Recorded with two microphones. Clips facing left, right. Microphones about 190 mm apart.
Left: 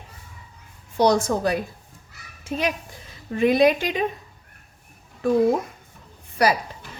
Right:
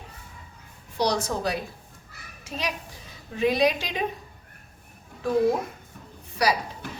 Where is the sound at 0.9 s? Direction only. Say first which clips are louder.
Left 6 dB; 50° left (ahead or behind).